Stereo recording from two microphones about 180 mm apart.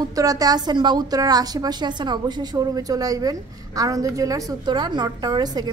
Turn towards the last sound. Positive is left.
turn(degrees=-20)  # may be behind; listen again after turning